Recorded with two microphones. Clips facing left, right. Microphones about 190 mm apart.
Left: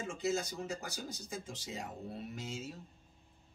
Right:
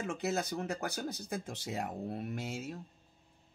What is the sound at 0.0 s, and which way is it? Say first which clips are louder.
Speech: right 1 dB; 65° right (ahead or behind).